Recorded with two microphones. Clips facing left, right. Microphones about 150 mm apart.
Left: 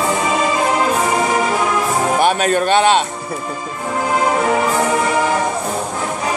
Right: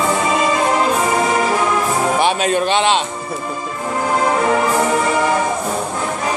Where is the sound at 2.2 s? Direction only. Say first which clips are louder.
Left 3 dB; 50° left (ahead or behind).